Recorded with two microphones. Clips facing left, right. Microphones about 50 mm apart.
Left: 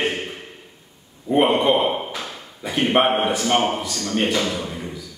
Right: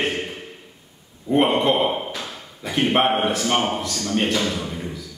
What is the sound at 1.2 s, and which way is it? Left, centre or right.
A man's voice, centre.